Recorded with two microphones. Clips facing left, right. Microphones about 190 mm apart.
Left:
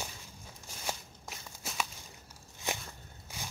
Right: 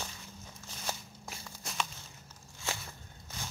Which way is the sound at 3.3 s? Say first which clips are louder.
Even; 10° left (ahead or behind).